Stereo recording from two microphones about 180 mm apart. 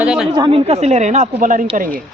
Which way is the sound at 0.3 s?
30° right (ahead or behind).